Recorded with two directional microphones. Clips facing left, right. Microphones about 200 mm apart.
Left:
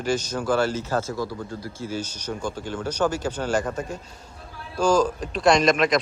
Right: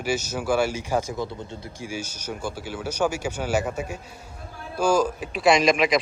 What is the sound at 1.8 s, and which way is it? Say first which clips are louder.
Speech: left 2 dB; 10° right (ahead or behind).